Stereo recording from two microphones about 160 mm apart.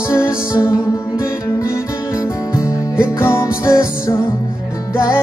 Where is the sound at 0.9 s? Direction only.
20° left (ahead or behind).